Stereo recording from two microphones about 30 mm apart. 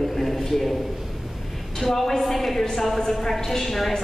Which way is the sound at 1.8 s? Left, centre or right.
Centre.